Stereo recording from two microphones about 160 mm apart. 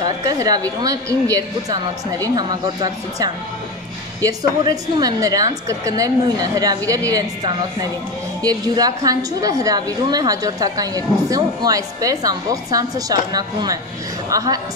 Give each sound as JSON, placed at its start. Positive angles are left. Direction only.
{"t": 0.0, "sound": "a woman's voice", "side_deg": -25}